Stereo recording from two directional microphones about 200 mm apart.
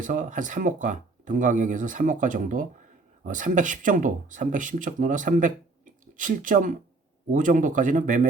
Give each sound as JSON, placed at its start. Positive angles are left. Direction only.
{"t": 0.0, "sound": "speech", "side_deg": -40}